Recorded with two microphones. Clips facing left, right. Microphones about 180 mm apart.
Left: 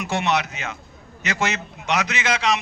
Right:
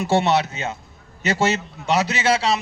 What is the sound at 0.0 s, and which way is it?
A man's voice, 30° right (ahead or behind).